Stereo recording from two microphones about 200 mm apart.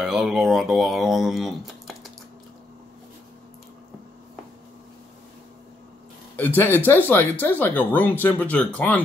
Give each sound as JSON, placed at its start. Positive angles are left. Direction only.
{"t": 0.0, "sound": "speech", "side_deg": 0}
{"t": 6.3, "sound": "speech", "side_deg": 10}